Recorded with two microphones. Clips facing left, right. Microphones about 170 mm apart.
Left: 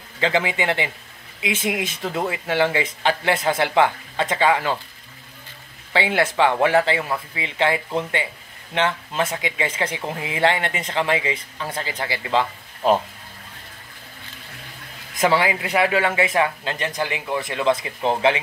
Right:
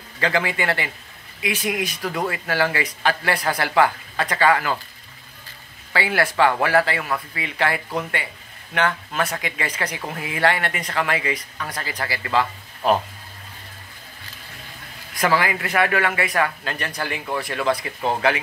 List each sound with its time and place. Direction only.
0.2 s speech: 20° left (ahead or behind)
5.9 s speech: 20° left (ahead or behind)
15.1 s speech: 20° left (ahead or behind)